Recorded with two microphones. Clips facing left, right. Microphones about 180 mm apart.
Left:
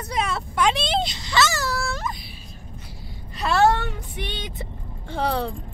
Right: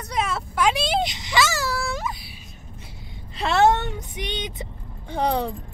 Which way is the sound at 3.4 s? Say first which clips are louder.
Right 1 dB; 20° right (ahead or behind).